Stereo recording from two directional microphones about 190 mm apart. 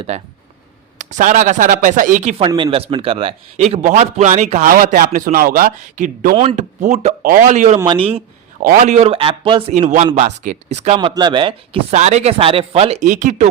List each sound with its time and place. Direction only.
0.9 s speech: 40° right (ahead or behind)
2.5 s a man's voice: 25° right (ahead or behind); by 6.3 s 45° right (ahead or behind)
6.3 s a man's voice: 30° right (ahead or behind)
7.2 s a man's voice: 45° right (ahead or behind)
7.9 s speech: 30° right (ahead or behind)
8.6 s a man's voice: 40° right (ahead or behind)
10.9 s a man's voice: 25° right (ahead or behind); by 13.5 s 40° right (ahead or behind)